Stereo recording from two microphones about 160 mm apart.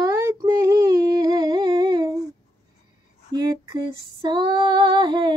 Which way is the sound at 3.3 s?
25° right (ahead or behind).